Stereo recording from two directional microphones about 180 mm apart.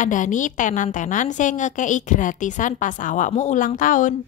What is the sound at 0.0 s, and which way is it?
A woman's voice, 45° left (ahead or behind).